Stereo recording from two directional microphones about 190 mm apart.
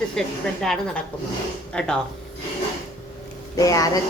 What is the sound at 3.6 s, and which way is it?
Speech, 20° left (ahead or behind).